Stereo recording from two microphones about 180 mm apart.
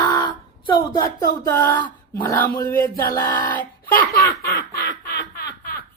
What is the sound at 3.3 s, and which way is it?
Speech, 10° left (ahead or behind).